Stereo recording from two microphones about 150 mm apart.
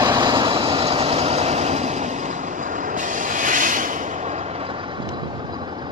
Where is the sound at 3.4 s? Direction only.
60° right (ahead or behind).